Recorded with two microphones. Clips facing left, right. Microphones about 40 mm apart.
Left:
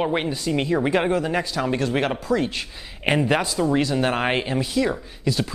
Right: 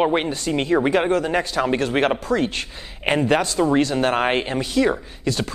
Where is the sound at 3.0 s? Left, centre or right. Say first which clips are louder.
Right 2 dB; centre.